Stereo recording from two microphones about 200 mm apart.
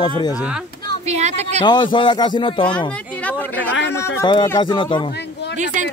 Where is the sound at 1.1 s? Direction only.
35° right (ahead or behind).